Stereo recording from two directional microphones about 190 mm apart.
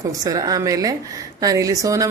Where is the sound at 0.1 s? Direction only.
20° right (ahead or behind).